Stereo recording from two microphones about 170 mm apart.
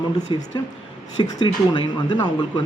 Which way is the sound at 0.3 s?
30° left (ahead or behind).